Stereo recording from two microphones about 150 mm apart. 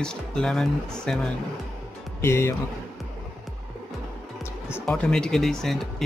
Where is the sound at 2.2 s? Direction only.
15° left (ahead or behind).